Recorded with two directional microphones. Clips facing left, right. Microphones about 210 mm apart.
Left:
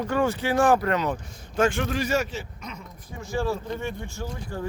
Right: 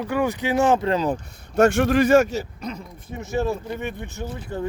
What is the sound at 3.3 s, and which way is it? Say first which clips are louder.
Speech: right 3 dB; 20° right (ahead or behind).